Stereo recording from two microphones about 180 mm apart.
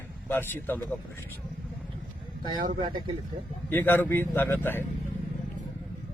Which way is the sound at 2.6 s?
50° right (ahead or behind).